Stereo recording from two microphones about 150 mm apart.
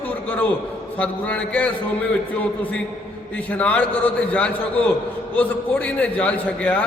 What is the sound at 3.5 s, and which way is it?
A man's voice, 10° left (ahead or behind).